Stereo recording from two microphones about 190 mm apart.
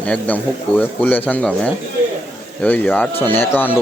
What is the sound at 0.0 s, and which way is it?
Speech, 5° left (ahead or behind).